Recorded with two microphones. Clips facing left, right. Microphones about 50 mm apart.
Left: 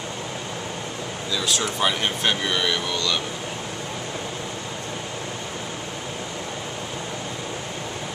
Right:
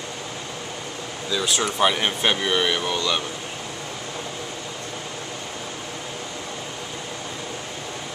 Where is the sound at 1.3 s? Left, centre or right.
Centre.